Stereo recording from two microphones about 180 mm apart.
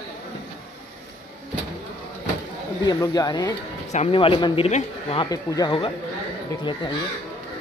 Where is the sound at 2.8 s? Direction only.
20° left (ahead or behind).